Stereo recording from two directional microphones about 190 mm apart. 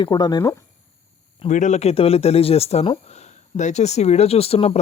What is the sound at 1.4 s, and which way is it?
Speech, 40° left (ahead or behind).